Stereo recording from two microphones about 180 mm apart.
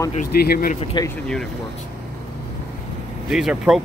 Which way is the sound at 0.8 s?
25° left (ahead or behind).